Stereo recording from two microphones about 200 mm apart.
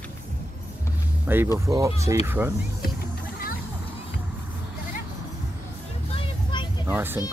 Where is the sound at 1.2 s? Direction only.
10° right (ahead or behind).